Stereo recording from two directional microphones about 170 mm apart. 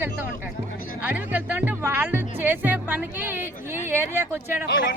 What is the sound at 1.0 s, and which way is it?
Music, 10° right (ahead or behind).